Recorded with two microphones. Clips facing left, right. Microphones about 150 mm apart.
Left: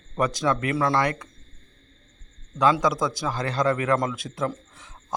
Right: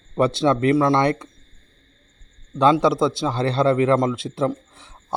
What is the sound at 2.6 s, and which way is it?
A man's voice, 30° right (ahead or behind).